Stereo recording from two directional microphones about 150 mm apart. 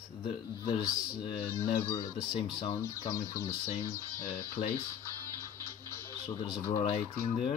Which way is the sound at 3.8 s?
20° right (ahead or behind).